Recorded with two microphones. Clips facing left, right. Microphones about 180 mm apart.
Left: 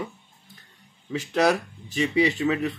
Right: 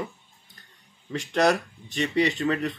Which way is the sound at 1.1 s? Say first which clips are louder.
Even; 5° left (ahead or behind).